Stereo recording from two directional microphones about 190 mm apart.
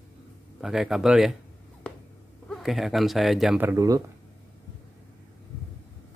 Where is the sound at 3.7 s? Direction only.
20° right (ahead or behind).